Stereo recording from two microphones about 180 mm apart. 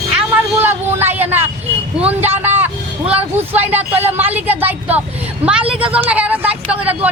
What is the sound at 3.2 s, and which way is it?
A woman's voice, 10° right (ahead or behind).